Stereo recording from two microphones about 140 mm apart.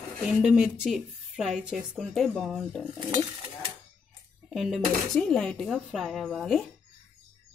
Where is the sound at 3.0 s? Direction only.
30° right (ahead or behind).